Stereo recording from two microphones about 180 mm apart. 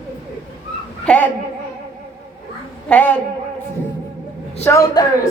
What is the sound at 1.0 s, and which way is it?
Speech, 5° left (ahead or behind).